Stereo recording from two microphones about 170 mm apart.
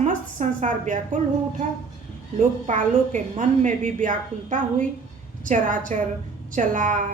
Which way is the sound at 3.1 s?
45° right (ahead or behind).